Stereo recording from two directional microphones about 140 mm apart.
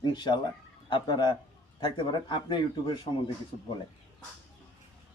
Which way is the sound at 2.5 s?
35° left (ahead or behind).